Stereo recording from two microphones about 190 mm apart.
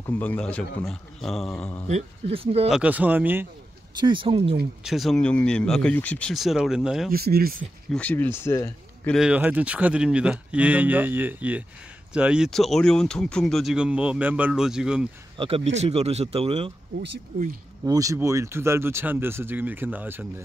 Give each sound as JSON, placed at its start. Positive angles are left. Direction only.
{"t": 0.0, "sound": "a man's voice", "side_deg": 10}
{"t": 1.9, "sound": "speech", "side_deg": -35}
{"t": 2.7, "sound": "speech", "side_deg": -10}
{"t": 4.0, "sound": "speech", "side_deg": -25}
{"t": 4.8, "sound": "speech", "side_deg": 0}
{"t": 7.1, "sound": "speech", "side_deg": -55}
{"t": 7.9, "sound": "a man's voice", "side_deg": 10}
{"t": 9.1, "sound": "speech", "side_deg": -5}
{"t": 15.3, "sound": "speech", "side_deg": -30}
{"t": 17.8, "sound": "speech", "side_deg": -20}